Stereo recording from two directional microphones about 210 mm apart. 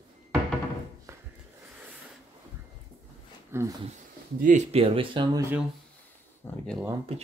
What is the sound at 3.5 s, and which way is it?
Speech, 10° right (ahead or behind).